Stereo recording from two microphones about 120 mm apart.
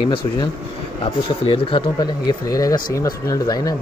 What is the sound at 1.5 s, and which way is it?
Speech, 50° left (ahead or behind).